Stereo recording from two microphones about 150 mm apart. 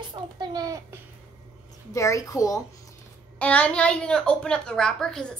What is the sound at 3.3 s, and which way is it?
A woman's voice, 10° left (ahead or behind).